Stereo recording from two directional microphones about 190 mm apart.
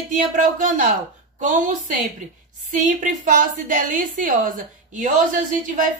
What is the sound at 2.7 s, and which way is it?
Speech, 45° right (ahead or behind).